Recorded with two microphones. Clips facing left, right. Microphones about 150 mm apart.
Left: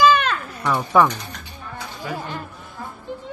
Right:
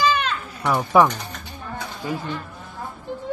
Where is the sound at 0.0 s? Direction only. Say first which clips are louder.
Left 5 dB; 55° left (ahead or behind).